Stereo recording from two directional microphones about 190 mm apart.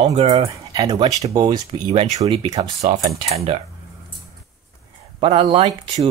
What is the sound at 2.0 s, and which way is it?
Speech, 35° right (ahead or behind).